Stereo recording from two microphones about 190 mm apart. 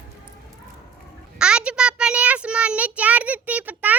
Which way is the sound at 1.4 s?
5° right (ahead or behind).